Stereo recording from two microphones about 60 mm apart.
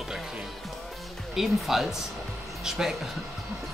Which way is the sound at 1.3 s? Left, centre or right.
Centre.